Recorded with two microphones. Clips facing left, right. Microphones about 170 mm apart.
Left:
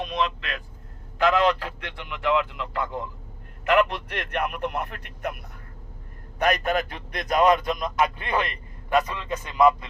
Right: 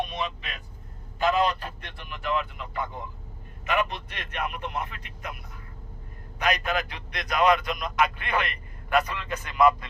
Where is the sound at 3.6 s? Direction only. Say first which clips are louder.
Left 6 dB; 70° left (ahead or behind); by 7.8 s 45° left (ahead or behind).